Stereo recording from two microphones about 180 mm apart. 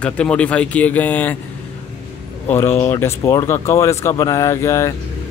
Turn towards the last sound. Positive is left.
turn(degrees=15)  # may be behind; listen again after turning